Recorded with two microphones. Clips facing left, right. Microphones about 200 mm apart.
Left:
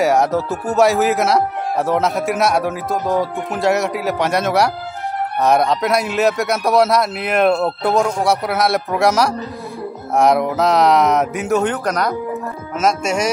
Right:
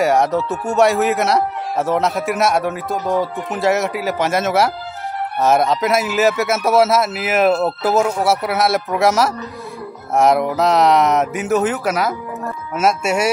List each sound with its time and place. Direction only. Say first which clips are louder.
0.0 s speech: even; centre (ahead or behind)